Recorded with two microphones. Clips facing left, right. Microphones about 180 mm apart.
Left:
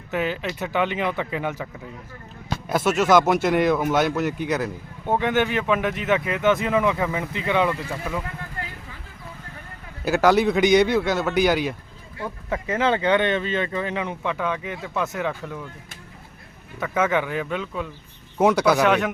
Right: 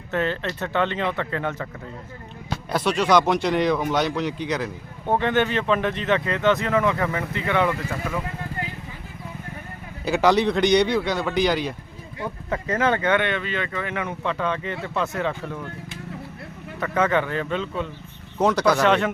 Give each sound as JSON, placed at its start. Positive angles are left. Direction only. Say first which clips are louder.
{"t": 0.1, "sound": "speech", "louder": "right 1 dB", "side_deg": 10}
{"t": 2.6, "sound": "speech", "louder": "left 2 dB", "side_deg": 5}
{"t": 10.0, "sound": "speech", "louder": "left 1 dB", "side_deg": 5}
{"t": 16.8, "sound": "speech", "louder": "right 1 dB", "side_deg": 5}